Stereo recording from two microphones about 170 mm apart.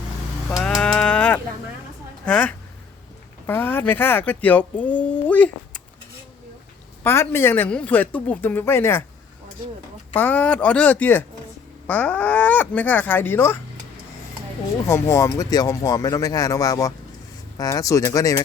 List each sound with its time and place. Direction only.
0.5 s livestock: 5° left (ahead or behind)
2.2 s speech: 10° left (ahead or behind)
7.0 s speech: 15° left (ahead or behind)
10.2 s speech: 10° left (ahead or behind)
14.8 s speech: 15° left (ahead or behind)